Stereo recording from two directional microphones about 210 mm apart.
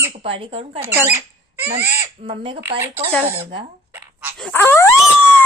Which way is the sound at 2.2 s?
25° right (ahead or behind).